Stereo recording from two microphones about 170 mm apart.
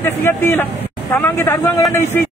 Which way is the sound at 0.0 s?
15° left (ahead or behind).